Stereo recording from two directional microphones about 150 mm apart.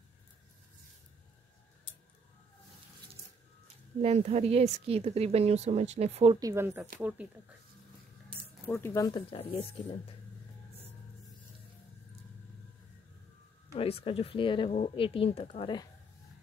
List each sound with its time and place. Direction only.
3.6 s a woman's voice: 45° right (ahead or behind)
6.4 s speech: 15° right (ahead or behind)
8.7 s speech: 20° left (ahead or behind)
9.3 s speech: 40° left (ahead or behind)
13.7 s speech: 40° left (ahead or behind)